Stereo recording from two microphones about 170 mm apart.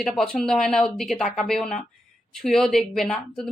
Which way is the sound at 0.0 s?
5° left (ahead or behind).